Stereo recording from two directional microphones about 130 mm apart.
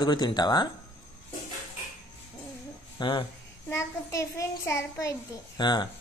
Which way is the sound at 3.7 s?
25° left (ahead or behind).